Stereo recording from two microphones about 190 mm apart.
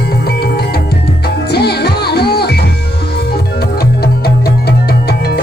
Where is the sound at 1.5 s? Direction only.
60° left (ahead or behind).